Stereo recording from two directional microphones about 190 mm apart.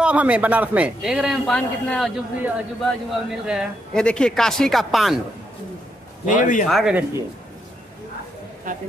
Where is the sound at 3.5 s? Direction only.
Centre (ahead or behind).